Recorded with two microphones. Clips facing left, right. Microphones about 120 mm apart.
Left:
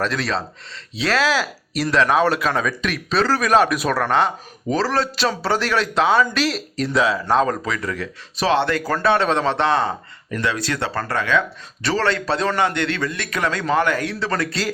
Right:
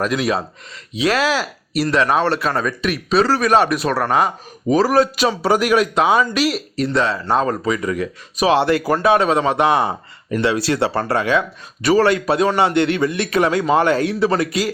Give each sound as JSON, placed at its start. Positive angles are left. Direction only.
{"t": 0.0, "sound": "a man's voice", "side_deg": -15}